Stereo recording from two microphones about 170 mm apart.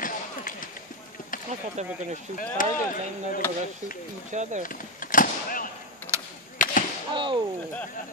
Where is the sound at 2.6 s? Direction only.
50° left (ahead or behind).